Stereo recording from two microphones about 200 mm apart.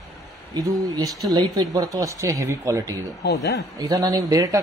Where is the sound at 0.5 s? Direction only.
20° right (ahead or behind).